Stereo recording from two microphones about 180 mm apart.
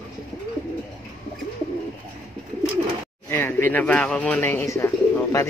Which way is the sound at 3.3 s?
10° left (ahead or behind).